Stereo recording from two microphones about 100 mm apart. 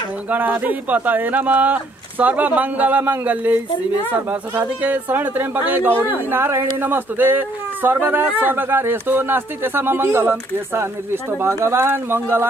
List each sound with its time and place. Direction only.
0.3 s a man's voice: 20° right (ahead or behind)